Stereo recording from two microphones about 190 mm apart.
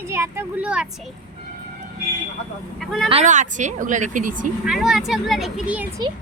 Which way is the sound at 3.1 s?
40° right (ahead or behind).